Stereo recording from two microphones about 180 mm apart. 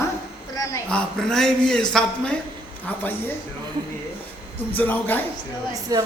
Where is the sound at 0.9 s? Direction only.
5° left (ahead or behind).